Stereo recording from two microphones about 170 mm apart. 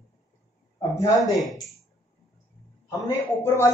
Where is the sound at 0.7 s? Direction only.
20° left (ahead or behind).